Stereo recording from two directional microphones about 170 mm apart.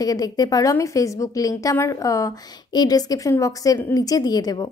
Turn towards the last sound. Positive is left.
turn(degrees=25)  # may be behind; listen again after turning